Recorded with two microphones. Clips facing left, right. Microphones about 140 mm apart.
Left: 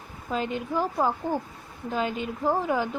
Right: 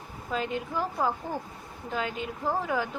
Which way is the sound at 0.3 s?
20° left (ahead or behind).